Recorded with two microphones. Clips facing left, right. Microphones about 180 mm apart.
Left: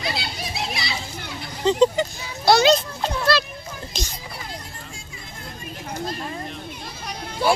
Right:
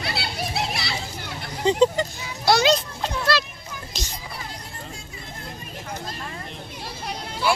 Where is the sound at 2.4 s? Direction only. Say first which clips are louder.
Left 3 dB; 25° left (ahead or behind).